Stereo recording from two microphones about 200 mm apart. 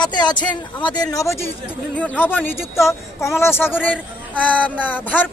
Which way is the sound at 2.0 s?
10° left (ahead or behind).